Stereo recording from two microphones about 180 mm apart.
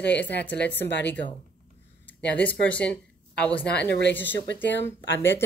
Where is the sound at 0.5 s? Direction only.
70° left (ahead or behind).